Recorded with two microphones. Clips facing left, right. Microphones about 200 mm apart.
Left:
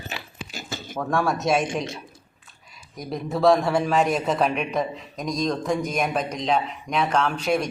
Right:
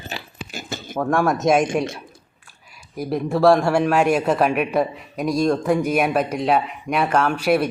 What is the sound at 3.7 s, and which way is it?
Speech, 70° right (ahead or behind).